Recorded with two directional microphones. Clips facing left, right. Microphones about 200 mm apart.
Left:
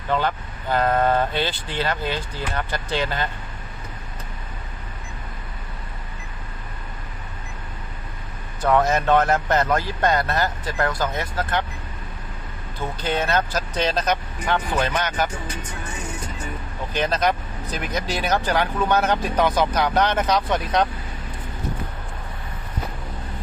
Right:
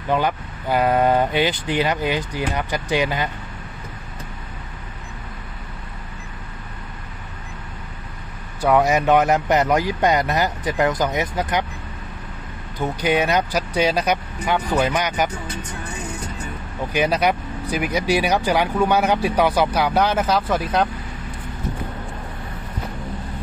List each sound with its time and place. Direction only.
0.1 s speech: 10° right (ahead or behind)
8.6 s speech: 15° right (ahead or behind)
12.7 s speech: 15° right (ahead or behind)
16.9 s speech: 10° right (ahead or behind)